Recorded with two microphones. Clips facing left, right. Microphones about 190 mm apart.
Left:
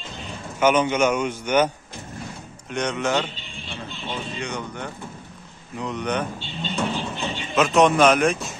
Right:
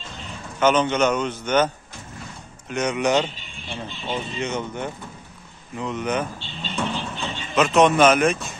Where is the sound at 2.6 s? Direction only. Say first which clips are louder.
Right 3 dB; 5° right (ahead or behind).